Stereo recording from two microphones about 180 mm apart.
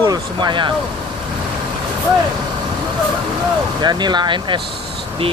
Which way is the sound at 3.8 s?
25° right (ahead or behind).